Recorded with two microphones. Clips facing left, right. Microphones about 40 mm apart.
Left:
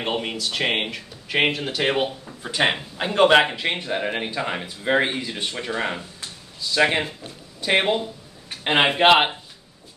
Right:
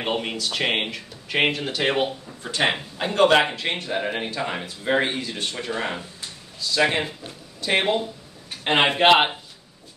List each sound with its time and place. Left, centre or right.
0.0 s a man's voice: centre